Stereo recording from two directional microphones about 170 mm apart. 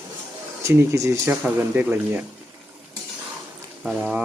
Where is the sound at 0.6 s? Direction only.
15° right (ahead or behind).